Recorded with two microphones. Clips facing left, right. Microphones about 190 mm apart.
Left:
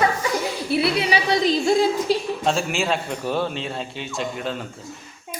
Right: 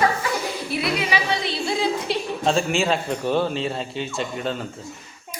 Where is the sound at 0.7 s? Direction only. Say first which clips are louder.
Left 4 dB; 35° left (ahead or behind).